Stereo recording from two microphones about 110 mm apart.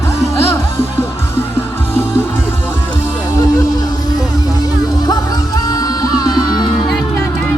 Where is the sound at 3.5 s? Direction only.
35° left (ahead or behind).